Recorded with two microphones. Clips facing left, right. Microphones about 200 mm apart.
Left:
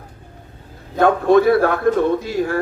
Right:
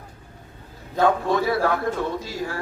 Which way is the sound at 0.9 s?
55° left (ahead or behind).